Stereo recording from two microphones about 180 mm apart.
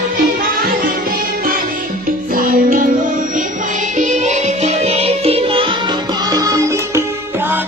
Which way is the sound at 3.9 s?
40° right (ahead or behind).